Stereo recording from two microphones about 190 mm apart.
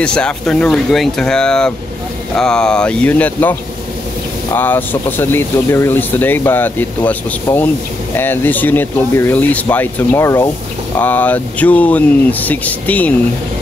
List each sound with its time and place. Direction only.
0.0 s speech: 5° left (ahead or behind)